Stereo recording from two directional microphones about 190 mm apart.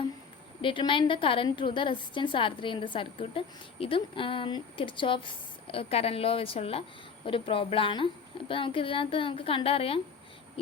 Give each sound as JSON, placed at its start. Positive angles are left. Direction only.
{"t": 0.6, "sound": "a woman's voice", "side_deg": 25}